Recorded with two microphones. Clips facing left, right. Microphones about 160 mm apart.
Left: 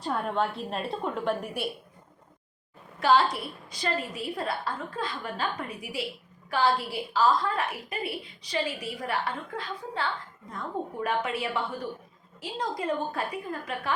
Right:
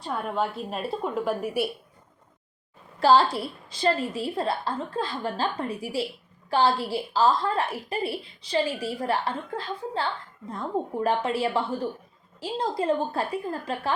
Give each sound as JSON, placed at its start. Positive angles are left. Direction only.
{"t": 0.0, "sound": "a woman's voice", "side_deg": 0}
{"t": 3.0, "sound": "a woman's voice", "side_deg": -30}